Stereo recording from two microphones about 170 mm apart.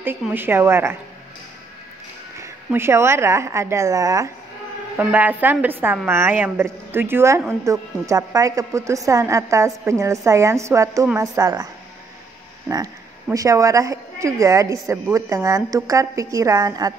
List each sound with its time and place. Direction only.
0.3 s speech: 10° right (ahead or behind)
2.3 s a woman's voice: 15° right (ahead or behind)